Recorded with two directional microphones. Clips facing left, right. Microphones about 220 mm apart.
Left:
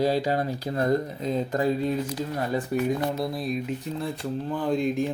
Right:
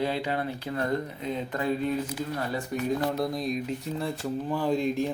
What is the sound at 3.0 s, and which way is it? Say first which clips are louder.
Speech: even; centre (ahead or behind).